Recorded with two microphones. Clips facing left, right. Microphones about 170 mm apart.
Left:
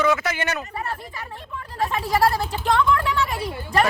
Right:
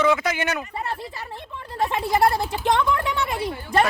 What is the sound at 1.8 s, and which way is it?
Speech, 20° right (ahead or behind).